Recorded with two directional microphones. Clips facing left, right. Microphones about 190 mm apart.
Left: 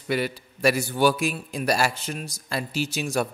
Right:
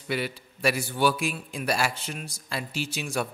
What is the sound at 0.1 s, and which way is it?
A man's voice, 45° left (ahead or behind).